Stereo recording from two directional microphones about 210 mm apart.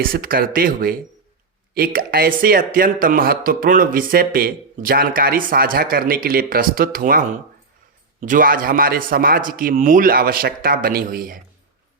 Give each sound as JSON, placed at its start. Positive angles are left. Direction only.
{"t": 0.0, "sound": "speech", "side_deg": -45}